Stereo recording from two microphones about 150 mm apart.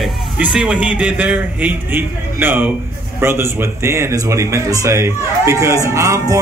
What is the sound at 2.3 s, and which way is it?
A man's voice, 10° right (ahead or behind).